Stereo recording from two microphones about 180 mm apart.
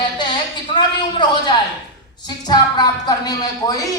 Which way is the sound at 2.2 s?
25° left (ahead or behind).